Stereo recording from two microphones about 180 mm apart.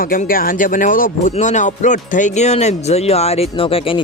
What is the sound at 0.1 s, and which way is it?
A man's voice, 50° left (ahead or behind).